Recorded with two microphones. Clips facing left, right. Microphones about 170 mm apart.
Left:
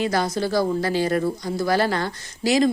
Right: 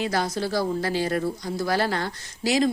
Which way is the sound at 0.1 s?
45° left (ahead or behind).